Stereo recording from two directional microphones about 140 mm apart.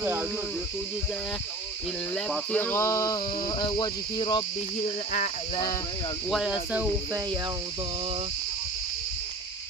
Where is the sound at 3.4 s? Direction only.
35° left (ahead or behind).